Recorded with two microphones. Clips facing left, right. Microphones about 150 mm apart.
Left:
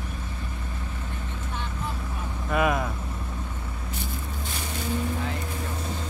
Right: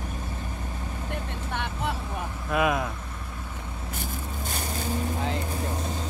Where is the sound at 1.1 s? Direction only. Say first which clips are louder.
Right 6 dB; 70° right (ahead or behind).